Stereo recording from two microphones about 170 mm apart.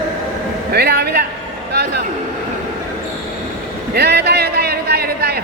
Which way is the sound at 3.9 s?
75° right (ahead or behind).